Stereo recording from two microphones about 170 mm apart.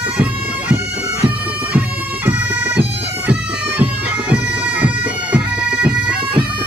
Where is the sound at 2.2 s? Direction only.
10° right (ahead or behind).